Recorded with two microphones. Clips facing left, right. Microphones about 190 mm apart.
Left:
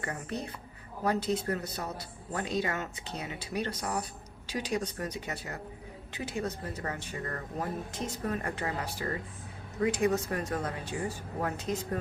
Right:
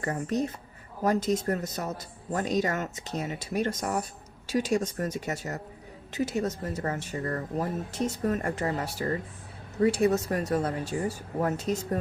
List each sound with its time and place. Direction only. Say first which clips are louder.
0.0 s speech: right 8 dB; 40° right (ahead or behind)